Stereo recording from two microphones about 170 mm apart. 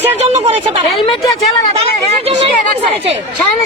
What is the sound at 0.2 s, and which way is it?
Speech, 35° right (ahead or behind).